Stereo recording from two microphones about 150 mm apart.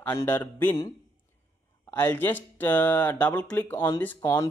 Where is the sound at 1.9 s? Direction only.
15° left (ahead or behind).